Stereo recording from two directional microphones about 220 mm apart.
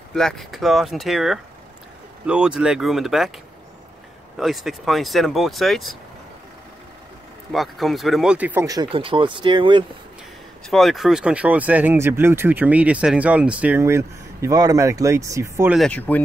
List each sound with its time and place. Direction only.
0.1 s speech: centre (ahead or behind)
4.4 s speech: centre (ahead or behind)
7.5 s speech: centre (ahead or behind); by 9.8 s 20° right (ahead or behind)
10.7 s speech: centre (ahead or behind)
15.7 s speech: 5° left (ahead or behind)